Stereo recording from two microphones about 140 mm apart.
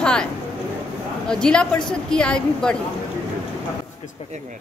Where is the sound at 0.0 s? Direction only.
5° left (ahead or behind).